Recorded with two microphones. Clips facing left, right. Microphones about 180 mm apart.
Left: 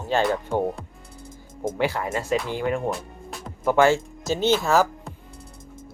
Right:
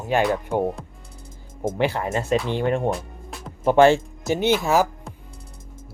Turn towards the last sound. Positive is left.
turn(degrees=-15)  # may be behind; listen again after turning